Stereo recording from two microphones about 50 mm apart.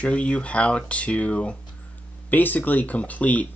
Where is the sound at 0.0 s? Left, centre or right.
Left.